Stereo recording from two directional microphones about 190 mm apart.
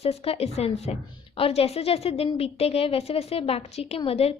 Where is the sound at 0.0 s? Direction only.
30° left (ahead or behind).